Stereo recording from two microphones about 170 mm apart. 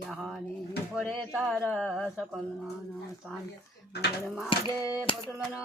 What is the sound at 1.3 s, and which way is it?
Speech, 5° right (ahead or behind).